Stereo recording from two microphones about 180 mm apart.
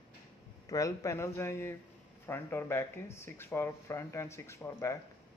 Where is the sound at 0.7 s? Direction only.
20° left (ahead or behind).